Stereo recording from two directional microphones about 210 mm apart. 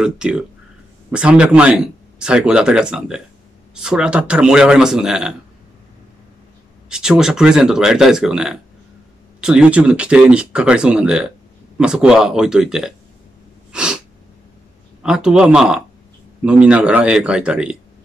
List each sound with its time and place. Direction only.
0.0 s speech: 5° right (ahead or behind)
6.9 s speech: 5° right (ahead or behind)
13.7 s sneeze: 5° right (ahead or behind)
15.0 s speech: 5° right (ahead or behind)